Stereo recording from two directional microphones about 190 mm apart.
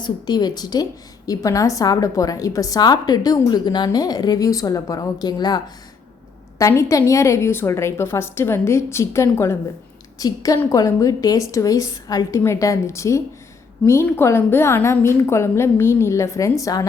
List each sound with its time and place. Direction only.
0.0 s a woman's voice: 20° left (ahead or behind)